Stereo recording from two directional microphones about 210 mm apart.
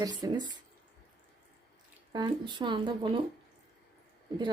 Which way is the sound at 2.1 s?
20° right (ahead or behind).